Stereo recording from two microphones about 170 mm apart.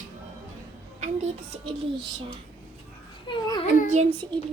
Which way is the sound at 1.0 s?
40° right (ahead or behind).